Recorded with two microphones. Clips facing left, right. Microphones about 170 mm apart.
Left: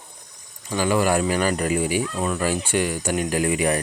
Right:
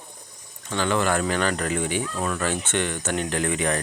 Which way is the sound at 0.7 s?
10° left (ahead or behind).